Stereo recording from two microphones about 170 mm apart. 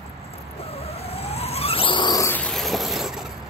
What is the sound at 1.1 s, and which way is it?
Vehicle, 35° left (ahead or behind).